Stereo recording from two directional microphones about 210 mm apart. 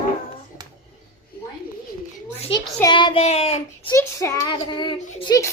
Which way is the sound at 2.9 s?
25° left (ahead or behind).